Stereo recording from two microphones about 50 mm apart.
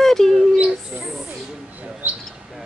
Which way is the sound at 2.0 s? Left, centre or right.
Right.